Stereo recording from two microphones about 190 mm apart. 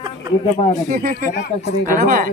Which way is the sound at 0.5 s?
40° left (ahead or behind).